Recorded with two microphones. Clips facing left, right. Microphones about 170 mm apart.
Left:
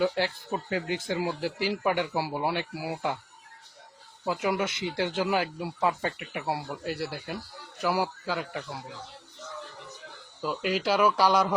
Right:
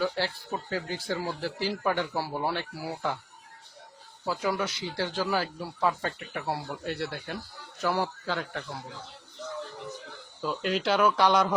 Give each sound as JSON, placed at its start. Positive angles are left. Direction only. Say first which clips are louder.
{"t": 0.0, "sound": "speech", "louder": "left 3 dB", "side_deg": 15}
{"t": 4.3, "sound": "speech", "louder": "left 1 dB", "side_deg": 20}
{"t": 10.4, "sound": "speech", "louder": "even", "side_deg": 5}